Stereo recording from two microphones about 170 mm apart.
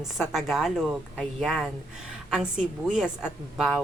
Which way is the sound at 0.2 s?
Centre (ahead or behind).